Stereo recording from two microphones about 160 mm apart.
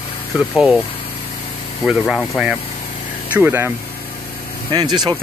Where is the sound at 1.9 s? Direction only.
Centre (ahead or behind).